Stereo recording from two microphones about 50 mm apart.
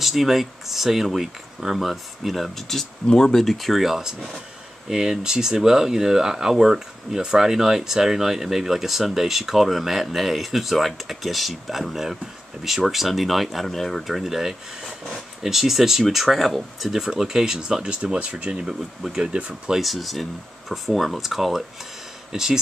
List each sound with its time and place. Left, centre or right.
0.0 s speech: centre; by 18.7 s right
18.7 s speech: centre
19.3 s speech: right
19.8 s speech: centre